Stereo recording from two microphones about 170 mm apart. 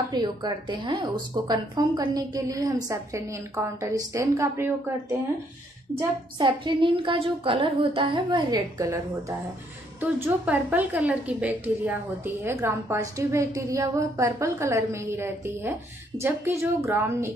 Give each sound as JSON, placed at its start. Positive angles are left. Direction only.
{"t": 0.1, "sound": "a woman's voice", "side_deg": -25}
{"t": 5.9, "sound": "a woman's voice", "side_deg": -25}
{"t": 9.9, "sound": "a woman's voice", "side_deg": -10}